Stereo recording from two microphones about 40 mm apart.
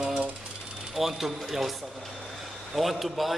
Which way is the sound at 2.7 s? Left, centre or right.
Centre.